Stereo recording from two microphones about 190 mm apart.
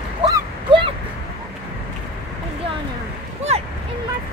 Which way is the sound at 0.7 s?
25° right (ahead or behind).